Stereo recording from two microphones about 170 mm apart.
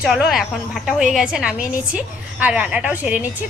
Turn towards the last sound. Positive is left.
turn(degrees=-10)  # may be behind; listen again after turning